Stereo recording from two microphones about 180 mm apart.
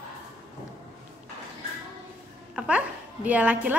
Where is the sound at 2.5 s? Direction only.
5° right (ahead or behind).